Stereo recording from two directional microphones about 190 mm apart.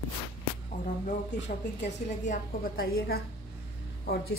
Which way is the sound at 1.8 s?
40° left (ahead or behind).